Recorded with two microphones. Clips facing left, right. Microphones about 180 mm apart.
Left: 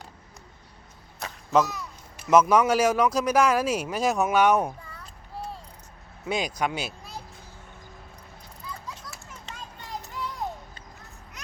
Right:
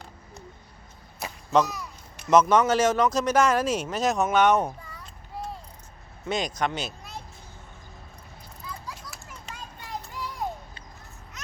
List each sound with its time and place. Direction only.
1.2 s arrow: centre (ahead or behind)
2.2 s speech: 10° left (ahead or behind)
6.2 s speech: 5° left (ahead or behind)
8.9 s a sound: 25° left (ahead or behind)